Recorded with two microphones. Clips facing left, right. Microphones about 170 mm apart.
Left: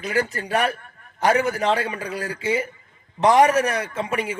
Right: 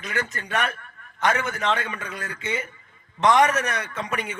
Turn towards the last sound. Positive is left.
turn(degrees=30)  # may be behind; listen again after turning